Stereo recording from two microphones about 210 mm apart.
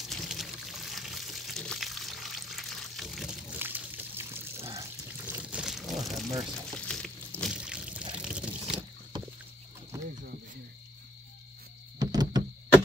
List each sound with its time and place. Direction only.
0.0 s water: centre (ahead or behind)
6.9 s pour: 5° left (ahead or behind)
9.9 s cricket: 15° right (ahead or behind)
12.0 s a sound: 20° right (ahead or behind)